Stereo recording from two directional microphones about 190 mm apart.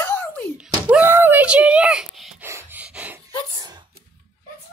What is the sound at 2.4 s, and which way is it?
Snort, 10° right (ahead or behind).